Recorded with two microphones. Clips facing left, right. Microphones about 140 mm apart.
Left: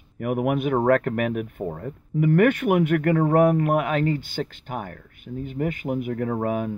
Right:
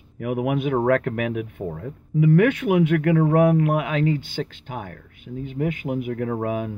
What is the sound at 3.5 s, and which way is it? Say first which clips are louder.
Speech: even; 45° left (ahead or behind).